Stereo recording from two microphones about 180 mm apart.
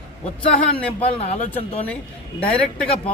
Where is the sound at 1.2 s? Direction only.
35° left (ahead or behind).